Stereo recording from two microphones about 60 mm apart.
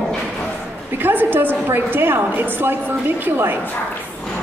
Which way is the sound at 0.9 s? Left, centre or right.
Right.